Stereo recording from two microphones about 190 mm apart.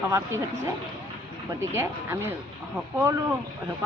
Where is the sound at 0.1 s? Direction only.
15° right (ahead or behind).